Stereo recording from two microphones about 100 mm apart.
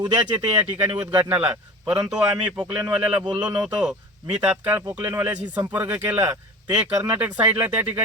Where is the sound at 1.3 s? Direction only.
15° right (ahead or behind).